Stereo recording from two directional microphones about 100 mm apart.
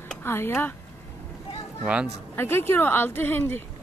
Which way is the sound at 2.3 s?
25° left (ahead or behind).